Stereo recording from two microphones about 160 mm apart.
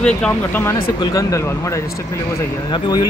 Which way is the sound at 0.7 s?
35° left (ahead or behind).